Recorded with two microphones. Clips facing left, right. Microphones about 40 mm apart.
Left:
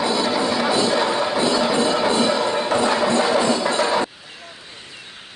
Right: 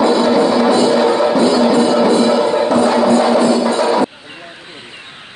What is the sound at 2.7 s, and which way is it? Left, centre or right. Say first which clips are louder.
Music: right 5 dB; right.